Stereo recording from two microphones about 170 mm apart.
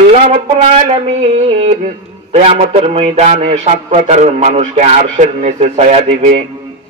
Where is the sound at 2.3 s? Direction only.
40° right (ahead or behind).